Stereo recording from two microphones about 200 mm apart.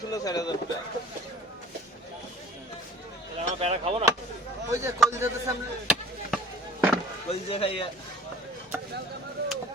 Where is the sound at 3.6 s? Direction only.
30° right (ahead or behind).